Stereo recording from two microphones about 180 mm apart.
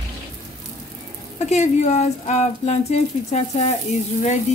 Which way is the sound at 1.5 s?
40° left (ahead or behind).